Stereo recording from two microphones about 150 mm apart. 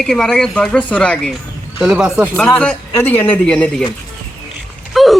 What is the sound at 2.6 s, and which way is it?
A man's voice, 10° left (ahead or behind).